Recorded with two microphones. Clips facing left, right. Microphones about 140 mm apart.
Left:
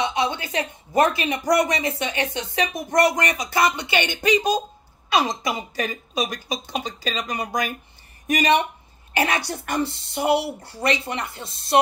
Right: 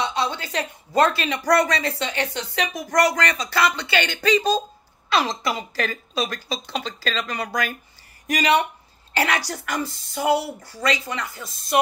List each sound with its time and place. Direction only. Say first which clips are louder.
0.0 s a woman's voice: left 1 dB; 20° left (ahead or behind)